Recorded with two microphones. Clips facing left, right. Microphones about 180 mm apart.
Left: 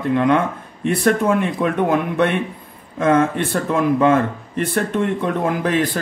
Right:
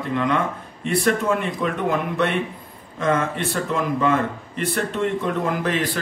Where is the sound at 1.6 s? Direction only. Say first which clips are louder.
Left 5 dB; 55° left (ahead or behind).